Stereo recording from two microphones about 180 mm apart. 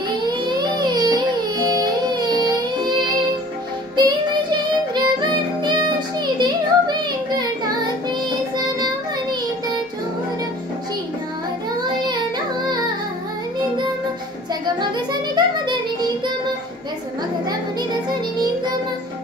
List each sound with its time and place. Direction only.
0.3 s a sound: 25° right (ahead or behind)
3.9 s music: 25° right (ahead or behind)
12.6 s music: 20° right (ahead or behind)
14.5 s music: 25° right (ahead or behind)
18.4 s child singing: 25° right (ahead or behind)